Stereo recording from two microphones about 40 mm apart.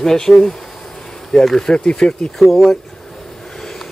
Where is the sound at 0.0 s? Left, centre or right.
Centre.